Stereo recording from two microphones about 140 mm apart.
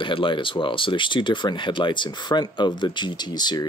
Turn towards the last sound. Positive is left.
turn(degrees=30)  # may be behind; listen again after turning